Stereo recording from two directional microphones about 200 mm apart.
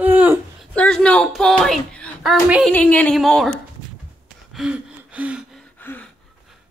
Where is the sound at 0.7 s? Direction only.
5° left (ahead or behind).